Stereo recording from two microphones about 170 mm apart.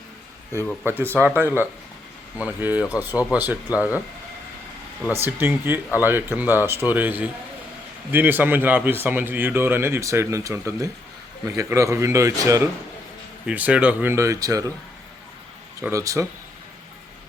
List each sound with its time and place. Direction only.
0.5 s a man's voice: 15° right (ahead or behind)
5.2 s a man's voice: 15° right (ahead or behind)
15.8 s a man's voice: 20° right (ahead or behind)